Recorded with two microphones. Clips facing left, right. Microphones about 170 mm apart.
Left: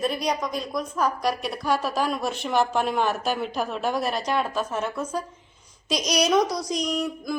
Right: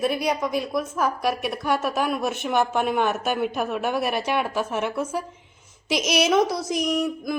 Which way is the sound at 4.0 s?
65° right (ahead or behind).